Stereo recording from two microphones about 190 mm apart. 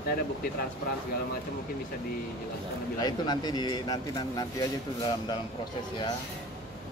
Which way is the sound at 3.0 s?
20° left (ahead or behind).